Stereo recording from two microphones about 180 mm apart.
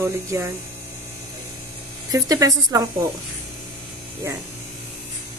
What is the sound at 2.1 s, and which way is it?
Speech, 20° right (ahead or behind).